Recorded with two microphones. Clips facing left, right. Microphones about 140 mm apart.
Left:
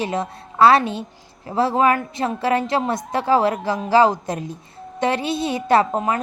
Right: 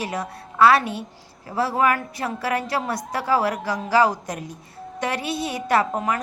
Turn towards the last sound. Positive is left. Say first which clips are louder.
# left 4 dB
turn(degrees=25)  # may be behind; listen again after turning